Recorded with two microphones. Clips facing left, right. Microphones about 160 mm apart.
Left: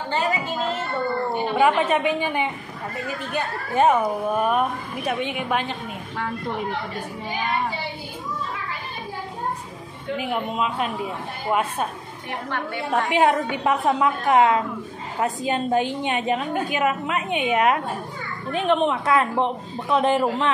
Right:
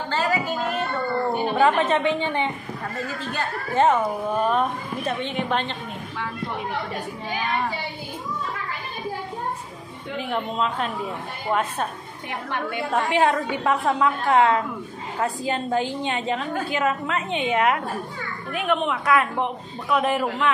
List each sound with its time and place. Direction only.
0.1 s a sound: 20° left (ahead or behind)
1.6 s a woman's voice: 10° left (ahead or behind)
10.3 s a woman's voice: 10° left (ahead or behind)
13.1 s a woman's voice: 20° left (ahead or behind)